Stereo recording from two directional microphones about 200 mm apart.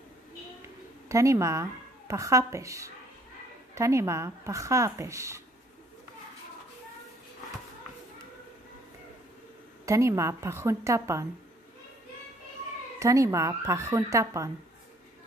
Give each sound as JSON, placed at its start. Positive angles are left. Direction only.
{"t": 1.0, "sound": "a woman's voice", "side_deg": -15}
{"t": 9.8, "sound": "speech", "side_deg": -15}
{"t": 13.0, "sound": "speech", "side_deg": -15}